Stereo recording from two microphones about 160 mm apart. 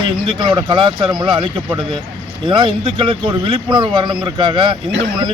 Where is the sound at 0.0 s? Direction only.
30° right (ahead or behind).